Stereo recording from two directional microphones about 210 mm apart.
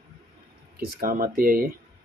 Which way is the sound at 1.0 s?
45° right (ahead or behind).